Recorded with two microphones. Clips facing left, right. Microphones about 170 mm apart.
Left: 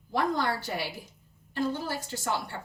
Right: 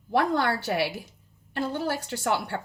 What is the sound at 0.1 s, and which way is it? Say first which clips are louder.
Speech: right 4 dB; 70° right (ahead or behind).